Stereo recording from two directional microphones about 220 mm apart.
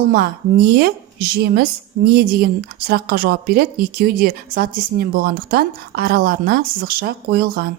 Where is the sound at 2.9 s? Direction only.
45° right (ahead or behind).